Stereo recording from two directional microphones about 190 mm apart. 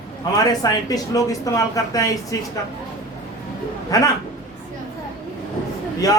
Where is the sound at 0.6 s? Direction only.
20° left (ahead or behind).